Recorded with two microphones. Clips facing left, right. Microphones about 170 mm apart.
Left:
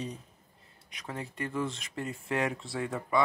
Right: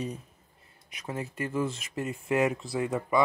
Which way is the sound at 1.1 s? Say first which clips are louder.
Right 3 dB; 20° right (ahead or behind).